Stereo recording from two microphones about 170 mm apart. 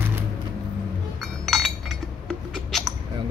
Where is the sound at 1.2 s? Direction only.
Centre (ahead or behind).